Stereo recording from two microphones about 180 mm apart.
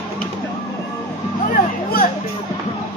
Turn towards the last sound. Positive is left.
turn(degrees=55)  # may be behind; listen again after turning